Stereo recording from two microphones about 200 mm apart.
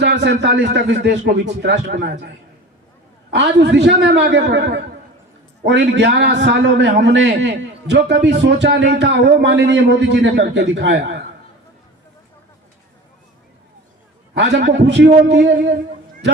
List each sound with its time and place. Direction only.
0.0 s a man's voice: 60° right (ahead or behind)
3.3 s a man's voice: 60° right (ahead or behind)
14.3 s a man's voice: 60° right (ahead or behind)